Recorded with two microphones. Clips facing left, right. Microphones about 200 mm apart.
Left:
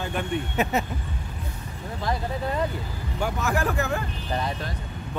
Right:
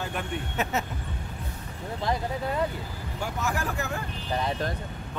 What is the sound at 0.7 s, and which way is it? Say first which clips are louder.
Speech: left 3 dB; 15° left (ahead or behind).